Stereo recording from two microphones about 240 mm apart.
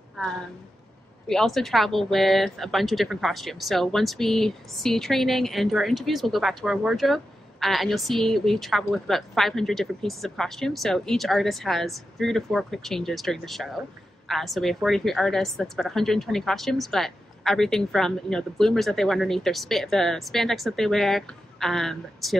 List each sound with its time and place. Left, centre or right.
1.2 s a woman's voice: centre